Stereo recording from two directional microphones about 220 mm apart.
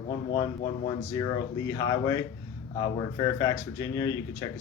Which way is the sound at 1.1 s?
15° left (ahead or behind).